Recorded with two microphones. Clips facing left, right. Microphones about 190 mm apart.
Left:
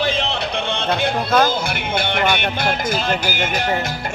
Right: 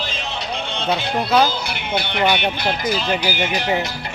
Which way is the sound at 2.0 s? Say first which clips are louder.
Right 1 dB; 50° left (ahead or behind).